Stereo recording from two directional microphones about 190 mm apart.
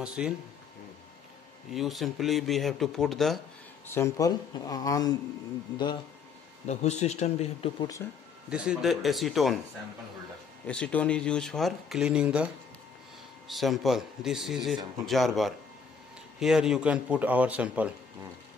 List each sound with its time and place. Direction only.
0.0 s speech: 5° right (ahead or behind)
1.7 s speech: centre (ahead or behind)
3.8 s speech: 15° left (ahead or behind)
6.7 s speech: 35° left (ahead or behind)
8.0 s speech: 10° left (ahead or behind)
8.5 s speech: 5° right (ahead or behind)
10.7 s speech: 5° left (ahead or behind)
13.5 s a man's voice: centre (ahead or behind)